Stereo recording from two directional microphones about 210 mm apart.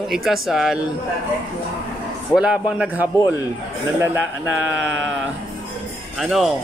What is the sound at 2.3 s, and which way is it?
Speech, 5° right (ahead or behind).